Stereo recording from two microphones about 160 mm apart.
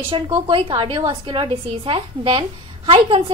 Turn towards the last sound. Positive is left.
turn(degrees=-35)  # may be behind; listen again after turning